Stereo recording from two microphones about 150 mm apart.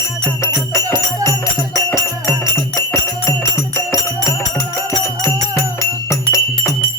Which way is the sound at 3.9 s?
20° left (ahead or behind).